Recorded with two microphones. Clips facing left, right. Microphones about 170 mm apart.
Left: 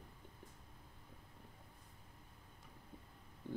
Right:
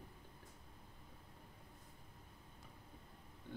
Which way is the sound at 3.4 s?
30° left (ahead or behind).